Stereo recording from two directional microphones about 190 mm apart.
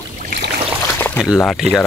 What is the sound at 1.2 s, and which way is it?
Speech, centre (ahead or behind).